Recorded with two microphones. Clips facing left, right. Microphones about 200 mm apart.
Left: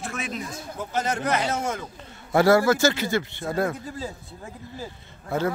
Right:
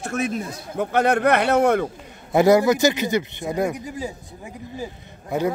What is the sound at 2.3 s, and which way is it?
Speech, 20° right (ahead or behind).